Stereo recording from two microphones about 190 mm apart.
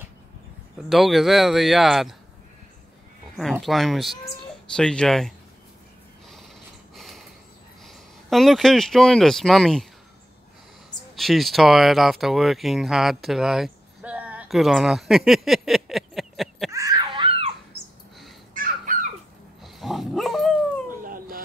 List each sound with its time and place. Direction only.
0.7 s a man's voice: centre (ahead or behind)
3.6 s a man's voice: centre (ahead or behind)
7.8 s speech: centre (ahead or behind)
11.1 s speech: centre (ahead or behind)
16.7 s wail: 20° right (ahead or behind)
17.7 s a sound: 10° right (ahead or behind)
18.5 s babbling: 45° right (ahead or behind)
19.6 s dog: centre (ahead or behind)
21.0 s baby cry: 45° right (ahead or behind)